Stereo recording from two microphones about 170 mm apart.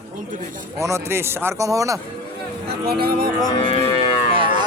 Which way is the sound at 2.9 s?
65° right (ahead or behind).